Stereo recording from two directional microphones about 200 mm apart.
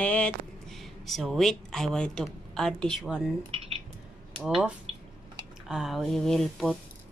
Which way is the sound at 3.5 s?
30° right (ahead or behind).